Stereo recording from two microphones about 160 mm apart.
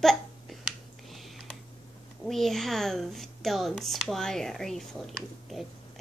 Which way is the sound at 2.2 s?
Centre (ahead or behind).